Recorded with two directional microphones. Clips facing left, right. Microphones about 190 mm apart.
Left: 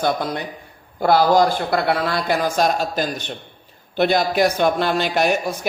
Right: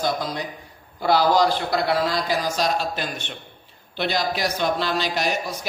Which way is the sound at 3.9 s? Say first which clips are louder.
Left 7 dB; 50° left (ahead or behind).